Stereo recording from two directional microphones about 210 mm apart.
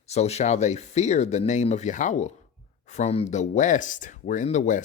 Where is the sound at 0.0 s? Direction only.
30° left (ahead or behind).